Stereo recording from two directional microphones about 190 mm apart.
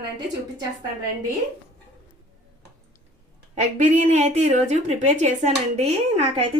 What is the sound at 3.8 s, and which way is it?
A woman's voice, 40° right (ahead or behind).